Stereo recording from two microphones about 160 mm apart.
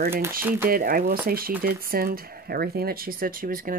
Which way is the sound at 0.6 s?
65° right (ahead or behind).